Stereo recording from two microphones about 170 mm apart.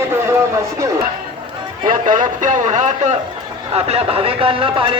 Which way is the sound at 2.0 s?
50° right (ahead or behind).